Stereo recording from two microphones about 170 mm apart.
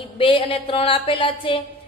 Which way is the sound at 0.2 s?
30° left (ahead or behind).